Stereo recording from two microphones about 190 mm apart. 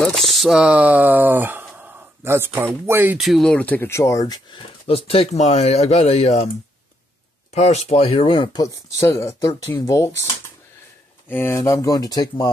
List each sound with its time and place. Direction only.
0.0 s speech: centre (ahead or behind)
3.2 s speech: centre (ahead or behind); by 6.5 s 35° left (ahead or behind)
7.5 s speech: 35° left (ahead or behind); by 10.1 s 20° left (ahead or behind)
11.2 s speech: 10° left (ahead or behind)